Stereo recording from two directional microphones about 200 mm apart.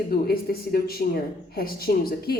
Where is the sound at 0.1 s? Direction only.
50° left (ahead or behind).